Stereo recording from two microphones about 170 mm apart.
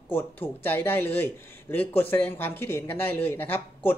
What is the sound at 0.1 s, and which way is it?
A man's voice, 10° left (ahead or behind).